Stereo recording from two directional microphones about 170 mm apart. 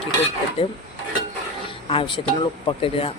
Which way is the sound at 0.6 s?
35° left (ahead or behind).